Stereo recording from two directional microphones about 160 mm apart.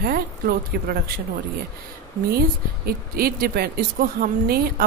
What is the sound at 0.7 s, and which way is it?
Speech, 70° right (ahead or behind).